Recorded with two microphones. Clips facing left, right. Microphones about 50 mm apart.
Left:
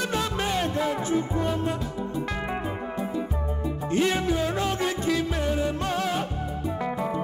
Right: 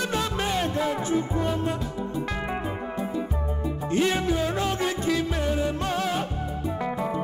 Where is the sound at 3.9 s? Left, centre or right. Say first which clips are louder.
Even; centre.